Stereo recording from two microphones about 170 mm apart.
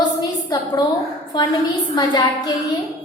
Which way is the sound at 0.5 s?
20° left (ahead or behind).